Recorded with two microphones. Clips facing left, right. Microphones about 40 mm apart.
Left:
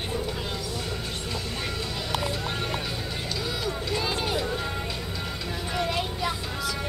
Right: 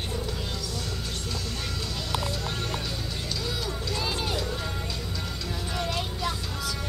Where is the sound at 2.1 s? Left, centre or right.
Centre.